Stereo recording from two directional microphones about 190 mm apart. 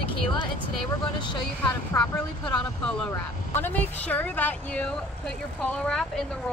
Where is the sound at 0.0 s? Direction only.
25° left (ahead or behind).